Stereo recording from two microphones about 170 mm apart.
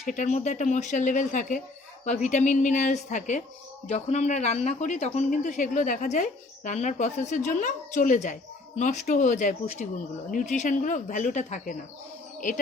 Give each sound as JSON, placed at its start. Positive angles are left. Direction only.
{"t": 0.0, "sound": "speech", "side_deg": 45}